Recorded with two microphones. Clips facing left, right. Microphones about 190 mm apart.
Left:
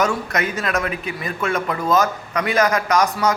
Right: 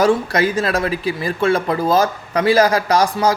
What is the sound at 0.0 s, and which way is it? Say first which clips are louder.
A man's voice: right 6 dB; 30° right (ahead or behind).